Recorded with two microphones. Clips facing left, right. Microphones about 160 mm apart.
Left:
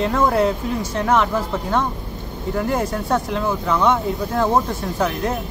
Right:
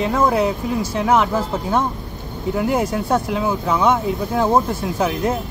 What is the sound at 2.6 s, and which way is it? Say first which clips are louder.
Speech: right 2 dB; 5° right (ahead or behind).